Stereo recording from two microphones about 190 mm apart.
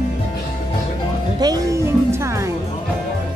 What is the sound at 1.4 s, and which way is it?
Music, 20° right (ahead or behind).